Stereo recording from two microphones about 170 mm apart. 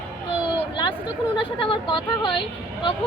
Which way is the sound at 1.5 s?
30° left (ahead or behind).